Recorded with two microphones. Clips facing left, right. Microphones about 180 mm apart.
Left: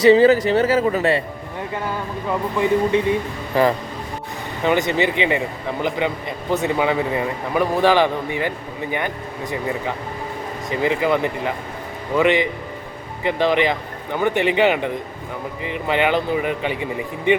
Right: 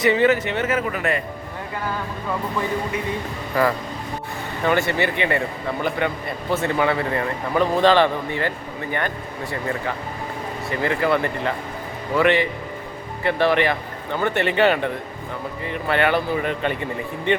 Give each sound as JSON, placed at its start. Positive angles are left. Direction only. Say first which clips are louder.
{"t": 0.0, "sound": "speech", "louder": "left 6 dB", "side_deg": 30}
{"t": 2.9, "sound": "a man's voice", "louder": "left 7 dB", "side_deg": 30}
{"t": 6.5, "sound": "a man's voice", "louder": "left 1 dB", "side_deg": 15}